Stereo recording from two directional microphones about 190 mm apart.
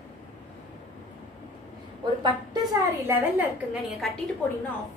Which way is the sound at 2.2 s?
20° right (ahead or behind).